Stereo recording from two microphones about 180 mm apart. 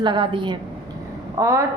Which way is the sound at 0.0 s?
25° right (ahead or behind).